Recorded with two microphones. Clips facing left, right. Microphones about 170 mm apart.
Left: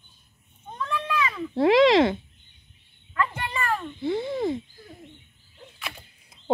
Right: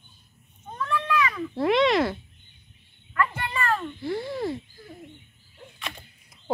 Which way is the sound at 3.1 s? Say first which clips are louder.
Right 1 dB; 20° left (ahead or behind).